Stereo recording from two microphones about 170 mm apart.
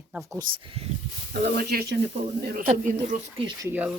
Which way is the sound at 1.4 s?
65° right (ahead or behind).